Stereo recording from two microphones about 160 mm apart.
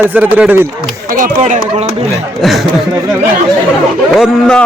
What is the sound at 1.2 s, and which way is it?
Speech, 55° right (ahead or behind).